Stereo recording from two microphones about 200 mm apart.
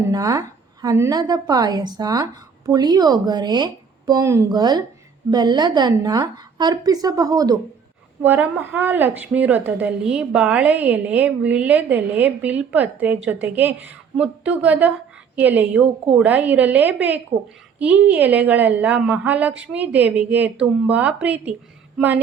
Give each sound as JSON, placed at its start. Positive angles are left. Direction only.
{"t": 0.1, "sound": "a woman's voice", "side_deg": -15}